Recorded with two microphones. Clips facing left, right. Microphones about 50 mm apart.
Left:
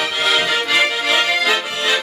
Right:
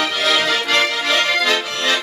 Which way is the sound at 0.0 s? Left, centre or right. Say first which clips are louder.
Even; centre.